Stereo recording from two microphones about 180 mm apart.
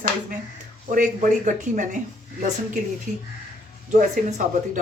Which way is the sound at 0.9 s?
45° right (ahead or behind).